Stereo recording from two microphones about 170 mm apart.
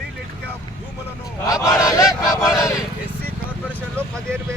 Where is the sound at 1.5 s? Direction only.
20° left (ahead or behind).